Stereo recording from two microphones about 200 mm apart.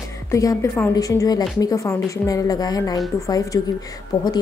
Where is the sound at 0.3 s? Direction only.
15° left (ahead or behind).